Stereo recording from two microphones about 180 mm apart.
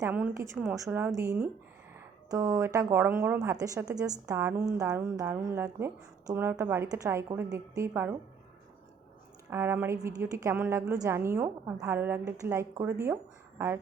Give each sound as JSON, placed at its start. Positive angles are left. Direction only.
{"t": 0.0, "sound": "a woman's voice", "side_deg": -10}
{"t": 9.5, "sound": "a woman's voice", "side_deg": -15}